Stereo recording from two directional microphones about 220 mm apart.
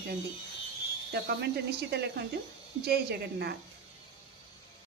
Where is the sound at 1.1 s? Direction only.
45° right (ahead or behind).